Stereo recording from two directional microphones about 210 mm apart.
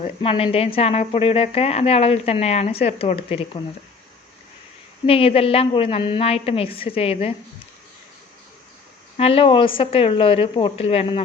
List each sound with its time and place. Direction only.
0.0 s speech: 25° left (ahead or behind)
5.0 s speech: 25° left (ahead or behind)
9.1 s speech: 25° left (ahead or behind)